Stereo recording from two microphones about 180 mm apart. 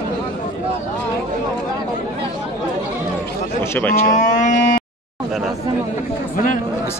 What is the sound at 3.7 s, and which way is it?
Speech, 10° left (ahead or behind).